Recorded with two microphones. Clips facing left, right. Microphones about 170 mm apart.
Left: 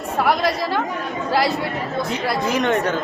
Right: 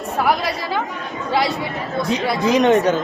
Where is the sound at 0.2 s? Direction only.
Centre (ahead or behind).